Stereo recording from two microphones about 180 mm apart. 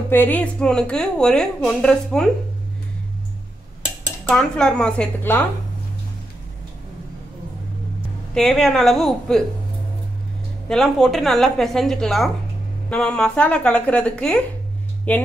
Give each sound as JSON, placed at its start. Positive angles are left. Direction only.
{"t": 0.1, "sound": "a woman's voice", "side_deg": 10}
{"t": 4.3, "sound": "a woman's voice", "side_deg": 5}
{"t": 8.4, "sound": "a woman's voice", "side_deg": 0}
{"t": 10.7, "sound": "a woman's voice", "side_deg": 0}